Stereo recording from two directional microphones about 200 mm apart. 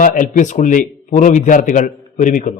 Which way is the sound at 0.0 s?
40° left (ahead or behind).